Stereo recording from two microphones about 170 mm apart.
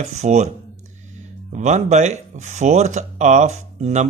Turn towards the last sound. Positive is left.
turn(degrees=-45)  # may be behind; listen again after turning